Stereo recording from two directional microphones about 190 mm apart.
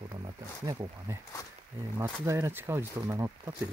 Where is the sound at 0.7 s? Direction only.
20° right (ahead or behind).